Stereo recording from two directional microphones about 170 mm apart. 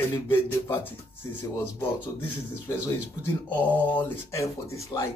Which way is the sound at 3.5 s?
10° left (ahead or behind).